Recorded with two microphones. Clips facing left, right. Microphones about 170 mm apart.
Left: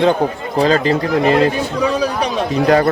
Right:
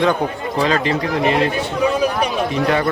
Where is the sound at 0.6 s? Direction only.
35° left (ahead or behind).